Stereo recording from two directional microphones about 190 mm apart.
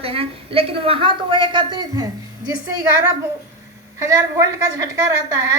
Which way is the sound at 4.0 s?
15° right (ahead or behind).